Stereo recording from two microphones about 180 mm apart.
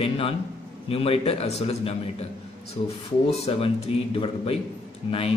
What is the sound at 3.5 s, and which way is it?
Speech, 30° left (ahead or behind).